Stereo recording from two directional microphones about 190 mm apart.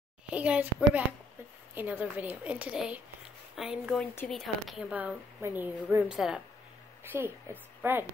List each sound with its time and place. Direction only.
0.3 s a woman's voice: 5° right (ahead or behind)